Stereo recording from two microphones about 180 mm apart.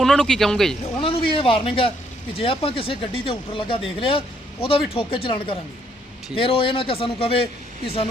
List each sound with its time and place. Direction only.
0.0 s speech: 5° left (ahead or behind)
1.0 s a sound: 30° left (ahead or behind)
2.4 s a man's voice: 30° left (ahead or behind)